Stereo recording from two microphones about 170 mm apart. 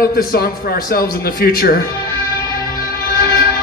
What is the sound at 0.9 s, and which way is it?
Speech, 65° left (ahead or behind).